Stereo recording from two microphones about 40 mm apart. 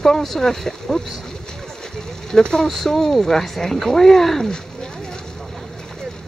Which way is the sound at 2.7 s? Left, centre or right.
Centre.